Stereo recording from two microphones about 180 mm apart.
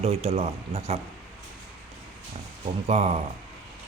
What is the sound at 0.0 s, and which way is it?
Speech, 35° right (ahead or behind).